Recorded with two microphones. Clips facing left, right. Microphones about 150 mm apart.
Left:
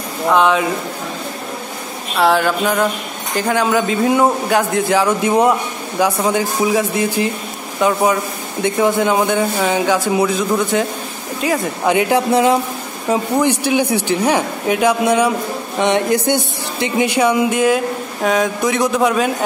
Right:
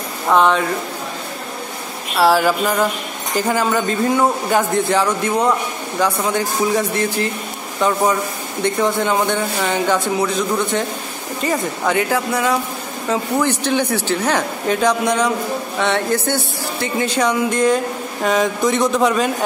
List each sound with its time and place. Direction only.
0.3 s speech: centre (ahead or behind)
2.1 s speech: 5° right (ahead or behind)
11.8 s speech: 20° left (ahead or behind)
13.1 s speech: 15° left (ahead or behind)